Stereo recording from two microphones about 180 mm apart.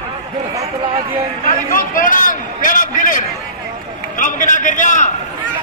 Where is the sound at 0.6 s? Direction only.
30° right (ahead or behind).